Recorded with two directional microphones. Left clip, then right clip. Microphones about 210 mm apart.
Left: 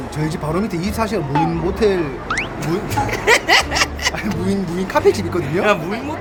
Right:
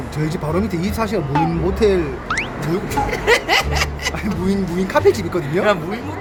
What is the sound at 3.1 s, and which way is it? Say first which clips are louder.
Speech: left 3 dB; 20° left (ahead or behind).